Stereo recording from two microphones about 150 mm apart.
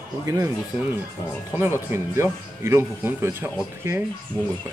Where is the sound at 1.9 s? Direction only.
15° right (ahead or behind).